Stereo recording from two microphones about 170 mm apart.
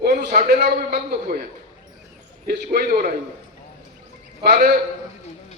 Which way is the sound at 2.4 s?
65° right (ahead or behind).